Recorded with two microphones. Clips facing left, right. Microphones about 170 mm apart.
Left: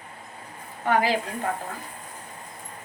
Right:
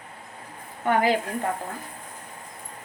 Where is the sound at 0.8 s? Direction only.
50° right (ahead or behind).